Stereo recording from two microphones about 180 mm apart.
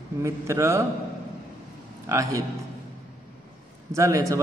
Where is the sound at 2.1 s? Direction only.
20° right (ahead or behind).